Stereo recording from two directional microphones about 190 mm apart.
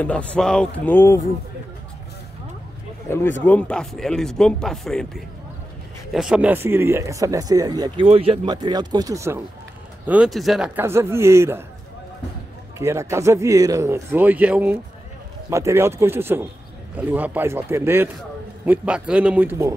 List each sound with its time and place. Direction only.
0.0 s speech: 5° left (ahead or behind)
3.1 s speech: 10° left (ahead or behind); by 9.4 s 15° right (ahead or behind)
10.0 s speech: 5° right (ahead or behind)
10.8 s speech: 15° right (ahead or behind)
12.7 s speech: 15° right (ahead or behind)